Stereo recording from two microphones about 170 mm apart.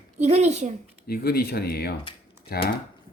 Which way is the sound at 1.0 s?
65° left (ahead or behind).